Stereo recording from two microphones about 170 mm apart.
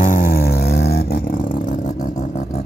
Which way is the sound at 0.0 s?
55° left (ahead or behind).